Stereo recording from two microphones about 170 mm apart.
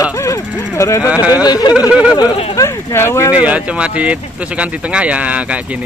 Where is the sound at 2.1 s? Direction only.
30° left (ahead or behind).